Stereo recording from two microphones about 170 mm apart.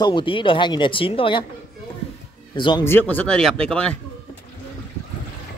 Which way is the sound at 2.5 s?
30° left (ahead or behind).